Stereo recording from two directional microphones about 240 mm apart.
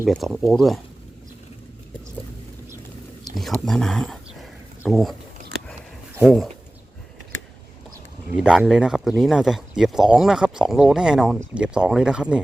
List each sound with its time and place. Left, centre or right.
0.0 s speech: centre
3.3 s a sound: centre
6.1 s speech: centre
8.4 s speech: centre